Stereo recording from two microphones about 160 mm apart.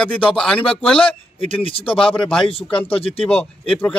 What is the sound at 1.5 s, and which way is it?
Speech, 35° left (ahead or behind).